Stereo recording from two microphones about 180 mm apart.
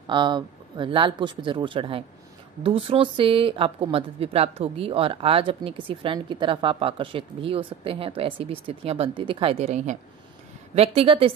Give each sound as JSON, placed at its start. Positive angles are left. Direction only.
{"t": 0.0, "sound": "speech", "side_deg": -25}